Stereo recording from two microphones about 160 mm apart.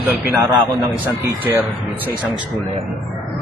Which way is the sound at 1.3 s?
15° right (ahead or behind).